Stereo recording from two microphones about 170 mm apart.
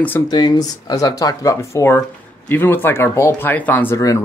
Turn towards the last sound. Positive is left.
turn(degrees=15)  # may be behind; listen again after turning